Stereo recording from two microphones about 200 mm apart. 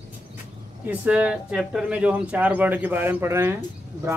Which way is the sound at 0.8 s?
5° right (ahead or behind).